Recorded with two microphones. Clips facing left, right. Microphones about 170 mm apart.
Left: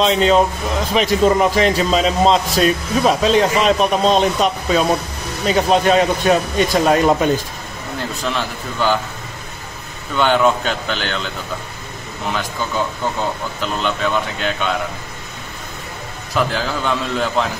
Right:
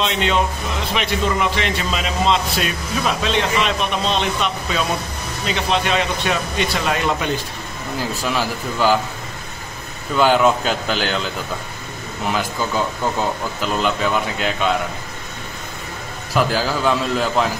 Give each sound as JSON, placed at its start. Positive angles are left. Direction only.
{"t": 0.0, "sound": "speech", "side_deg": 35}
{"t": 8.4, "sound": "a man's voice", "side_deg": -5}
{"t": 10.1, "sound": "a man's voice", "side_deg": -5}
{"t": 13.6, "sound": "a man's voice", "side_deg": -5}
{"t": 16.3, "sound": "a man's voice", "side_deg": -5}